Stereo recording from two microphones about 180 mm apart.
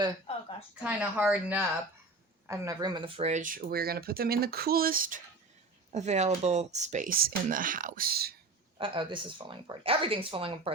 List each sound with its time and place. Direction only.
0.8 s speech: 5° right (ahead or behind)
2.5 s speech: 20° right (ahead or behind); by 5.2 s 50° right (ahead or behind)
5.9 s speech: 40° right (ahead or behind); by 8.4 s 60° right (ahead or behind)
8.8 s speech: 25° right (ahead or behind)